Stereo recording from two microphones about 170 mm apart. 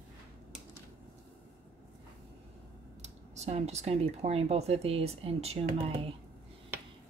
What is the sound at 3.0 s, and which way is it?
Speech, 40° right (ahead or behind).